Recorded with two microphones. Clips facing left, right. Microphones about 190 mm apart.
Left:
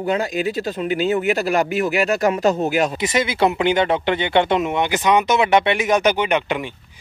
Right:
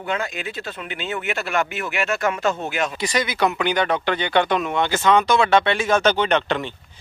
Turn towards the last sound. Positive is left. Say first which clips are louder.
# even
turn(degrees=15)  # may be behind; listen again after turning